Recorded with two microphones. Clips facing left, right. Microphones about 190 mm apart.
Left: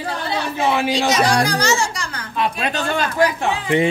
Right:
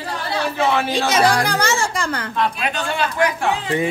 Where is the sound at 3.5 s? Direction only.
20° left (ahead or behind).